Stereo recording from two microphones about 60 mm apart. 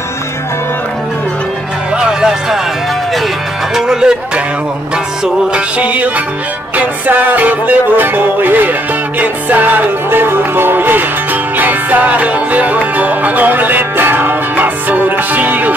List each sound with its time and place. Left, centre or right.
2.0 s music: centre
3.7 s music: centre
5.2 s music: centre